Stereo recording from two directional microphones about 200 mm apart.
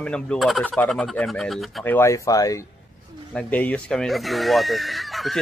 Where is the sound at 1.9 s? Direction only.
15° left (ahead or behind).